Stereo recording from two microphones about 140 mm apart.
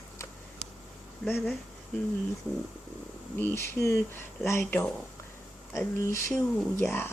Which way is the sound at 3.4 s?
15° left (ahead or behind).